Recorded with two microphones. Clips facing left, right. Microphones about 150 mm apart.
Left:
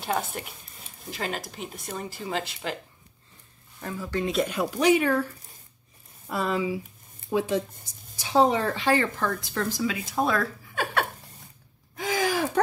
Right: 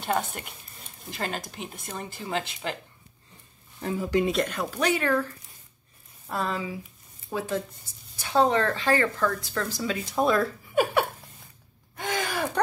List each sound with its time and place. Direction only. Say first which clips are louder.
0.0 s speech: right 1 dB; centre (ahead or behind)
3.8 s speech: right 5 dB; 20° right (ahead or behind)
4.3 s speech: left 1 dB; 5° left (ahead or behind)
6.3 s speech: left 3 dB; 10° left (ahead or behind)
10.0 s speech: right 4 dB; centre (ahead or behind)
10.7 s a sound: right 6 dB; 10° right (ahead or behind)